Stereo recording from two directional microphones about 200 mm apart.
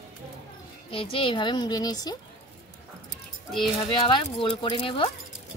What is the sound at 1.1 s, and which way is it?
Speech, 25° left (ahead or behind).